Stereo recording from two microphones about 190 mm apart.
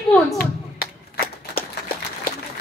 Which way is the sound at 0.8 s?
50° left (ahead or behind).